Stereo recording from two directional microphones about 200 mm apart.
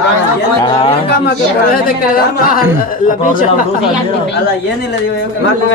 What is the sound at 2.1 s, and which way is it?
Speech, 45° left (ahead or behind).